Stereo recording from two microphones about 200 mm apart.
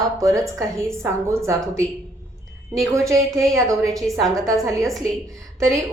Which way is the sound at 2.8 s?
15° right (ahead or behind).